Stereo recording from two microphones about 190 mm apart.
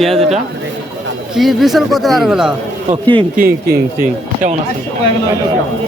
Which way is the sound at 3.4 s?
55° right (ahead or behind).